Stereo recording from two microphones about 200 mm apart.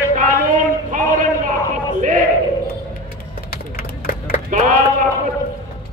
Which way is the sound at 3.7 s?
45° left (ahead or behind).